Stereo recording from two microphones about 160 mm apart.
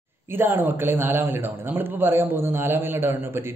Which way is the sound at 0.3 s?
15° right (ahead or behind).